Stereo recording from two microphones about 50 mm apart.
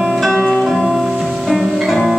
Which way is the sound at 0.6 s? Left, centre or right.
Centre.